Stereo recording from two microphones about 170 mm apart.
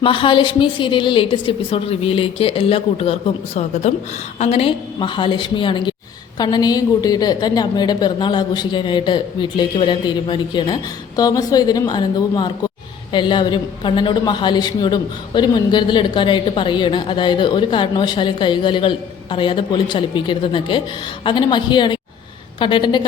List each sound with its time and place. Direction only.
0.0 s a woman's voice: 30° left (ahead or behind)